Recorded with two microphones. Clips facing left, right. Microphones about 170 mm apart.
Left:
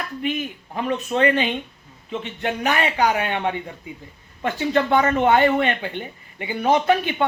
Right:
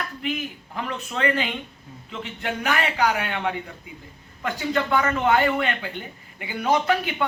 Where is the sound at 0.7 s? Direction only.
25° left (ahead or behind).